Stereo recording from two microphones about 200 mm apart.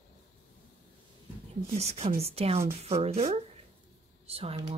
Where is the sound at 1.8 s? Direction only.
30° right (ahead or behind).